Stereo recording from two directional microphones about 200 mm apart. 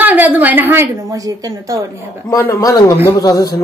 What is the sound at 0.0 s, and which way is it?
A woman's voice, 10° right (ahead or behind).